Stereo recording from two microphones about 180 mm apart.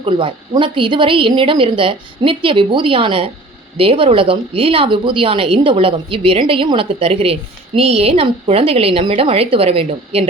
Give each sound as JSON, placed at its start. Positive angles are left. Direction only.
{"t": 0.0, "sound": "a woman's voice", "side_deg": -30}